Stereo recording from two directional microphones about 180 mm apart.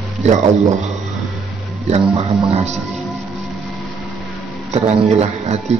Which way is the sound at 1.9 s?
35° right (ahead or behind).